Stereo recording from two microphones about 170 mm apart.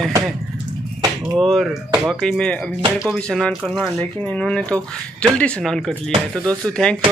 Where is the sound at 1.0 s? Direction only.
15° right (ahead or behind).